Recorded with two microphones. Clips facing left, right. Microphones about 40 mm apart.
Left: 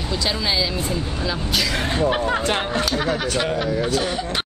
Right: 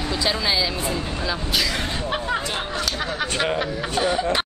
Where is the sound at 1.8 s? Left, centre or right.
Centre.